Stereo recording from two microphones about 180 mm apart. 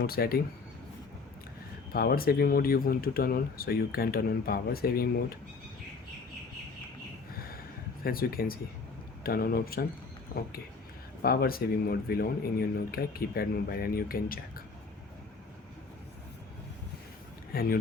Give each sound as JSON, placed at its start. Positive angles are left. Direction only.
{"t": 0.0, "sound": "speech", "side_deg": 55}
{"t": 1.9, "sound": "speech", "side_deg": 55}
{"t": 7.3, "sound": "a sound", "side_deg": 55}
{"t": 8.0, "sound": "speech", "side_deg": 55}
{"t": 11.2, "sound": "speech", "side_deg": 60}
{"t": 17.5, "sound": "speech", "side_deg": 55}